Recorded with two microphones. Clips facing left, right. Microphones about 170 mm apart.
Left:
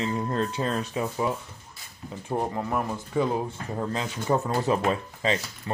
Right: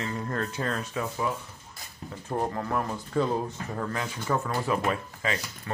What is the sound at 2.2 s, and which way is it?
Speech, 10° left (ahead or behind).